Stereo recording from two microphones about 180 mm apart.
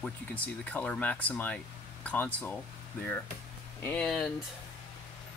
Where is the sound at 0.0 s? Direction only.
10° left (ahead or behind).